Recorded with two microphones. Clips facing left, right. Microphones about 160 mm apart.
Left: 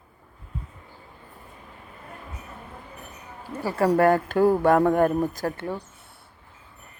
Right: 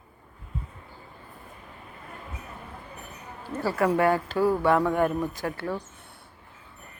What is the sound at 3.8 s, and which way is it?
Speech, 40° left (ahead or behind).